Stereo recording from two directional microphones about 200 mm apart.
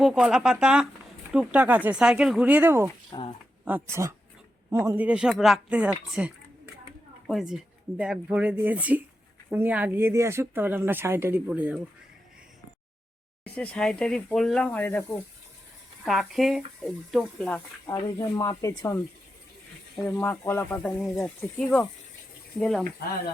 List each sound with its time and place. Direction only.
0.0 s speech: centre (ahead or behind)
3.1 s a sound: 20° left (ahead or behind)
3.7 s speech: 10° right (ahead or behind)
13.4 s speech: 5° left (ahead or behind)
16.0 s speech: centre (ahead or behind)
17.8 s speech: 20° left (ahead or behind)
20.1 s speech: 10° left (ahead or behind)